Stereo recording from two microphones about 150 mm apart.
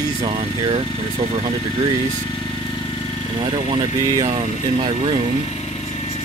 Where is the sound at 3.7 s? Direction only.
35° right (ahead or behind).